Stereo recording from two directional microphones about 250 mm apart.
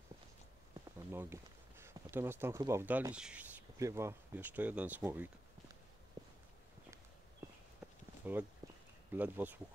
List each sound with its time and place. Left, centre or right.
0.9 s speech: centre
6.2 s walk: centre
7.4 s walk: centre
8.2 s speech: centre
8.6 s a sound: centre
9.1 s speech: centre